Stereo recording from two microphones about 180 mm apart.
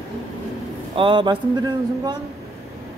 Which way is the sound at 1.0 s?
25° right (ahead or behind).